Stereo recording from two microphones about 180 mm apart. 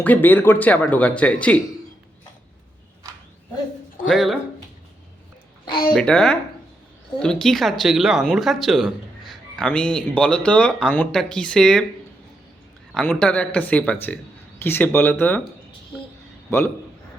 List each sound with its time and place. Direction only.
0.0 s speech: 10° left (ahead or behind)
4.0 s speech: centre (ahead or behind)
5.9 s speech: 5° left (ahead or behind)
12.9 s speech: 5° left (ahead or behind)
16.5 s a man's voice: 15° left (ahead or behind)